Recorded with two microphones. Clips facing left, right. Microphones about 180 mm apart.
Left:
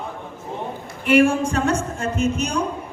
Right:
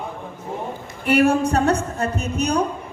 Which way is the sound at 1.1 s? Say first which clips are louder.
Even; 40° right (ahead or behind).